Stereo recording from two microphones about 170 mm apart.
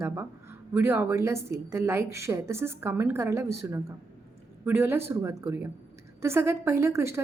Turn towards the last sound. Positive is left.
turn(degrees=-15)  # may be behind; listen again after turning